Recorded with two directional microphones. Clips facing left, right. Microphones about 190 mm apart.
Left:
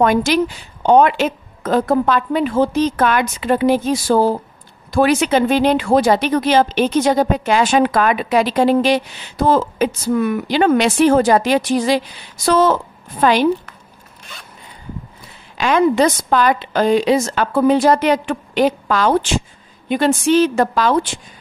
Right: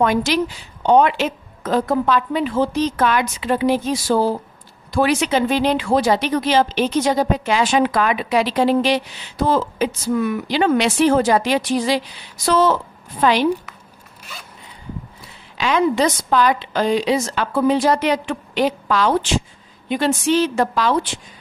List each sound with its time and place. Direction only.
0.0 s speech: 50° left (ahead or behind)
15.5 s speech: 50° left (ahead or behind)